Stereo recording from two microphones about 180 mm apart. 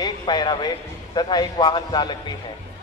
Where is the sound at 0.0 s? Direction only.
25° left (ahead or behind).